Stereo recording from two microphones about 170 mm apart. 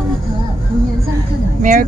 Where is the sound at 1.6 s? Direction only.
55° right (ahead or behind).